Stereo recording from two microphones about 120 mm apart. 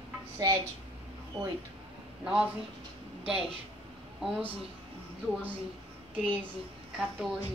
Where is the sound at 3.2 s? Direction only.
55° right (ahead or behind).